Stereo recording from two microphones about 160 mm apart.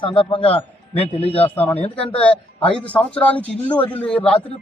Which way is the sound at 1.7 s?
40° left (ahead or behind).